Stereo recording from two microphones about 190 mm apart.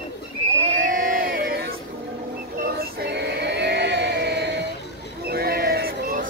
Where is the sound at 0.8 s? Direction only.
45° right (ahead or behind).